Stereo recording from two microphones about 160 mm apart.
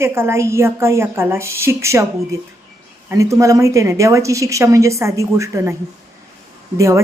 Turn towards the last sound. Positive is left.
turn(degrees=-20)  # may be behind; listen again after turning